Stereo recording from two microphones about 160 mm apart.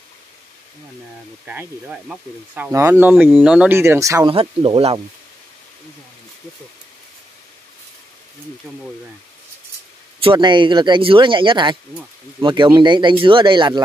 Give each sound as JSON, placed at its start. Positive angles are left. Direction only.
{"t": 1.4, "sound": "speech", "side_deg": -10}
{"t": 4.3, "sound": "speech", "side_deg": -35}
{"t": 10.2, "sound": "speech", "side_deg": -30}